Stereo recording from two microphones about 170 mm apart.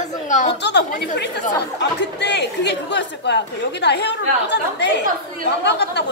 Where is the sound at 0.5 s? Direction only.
90° left.